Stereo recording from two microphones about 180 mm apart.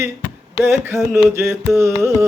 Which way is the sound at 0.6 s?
15° right (ahead or behind).